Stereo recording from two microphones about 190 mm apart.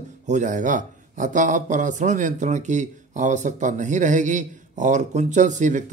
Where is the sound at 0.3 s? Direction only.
40° right (ahead or behind).